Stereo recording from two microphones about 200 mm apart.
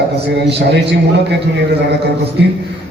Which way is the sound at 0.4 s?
60° right (ahead or behind).